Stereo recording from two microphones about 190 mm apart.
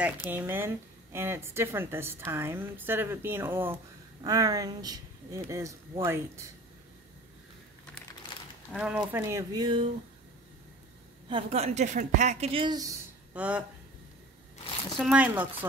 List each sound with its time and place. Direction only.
0.3 s a woman's voice: 10° right (ahead or behind)
8.7 s a woman's voice: 5° right (ahead or behind); by 9.8 s 25° right (ahead or behind)
11.2 s speech: 30° right (ahead or behind); by 13.7 s 5° right (ahead or behind)
15.0 s a woman's voice: 5° right (ahead or behind)